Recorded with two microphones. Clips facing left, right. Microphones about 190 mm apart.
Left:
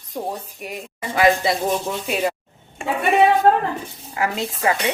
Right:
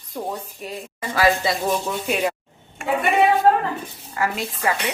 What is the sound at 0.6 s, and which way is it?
Speech, 15° left (ahead or behind).